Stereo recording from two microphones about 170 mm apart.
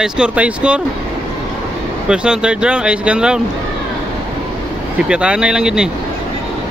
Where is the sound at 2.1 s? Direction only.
5° right (ahead or behind).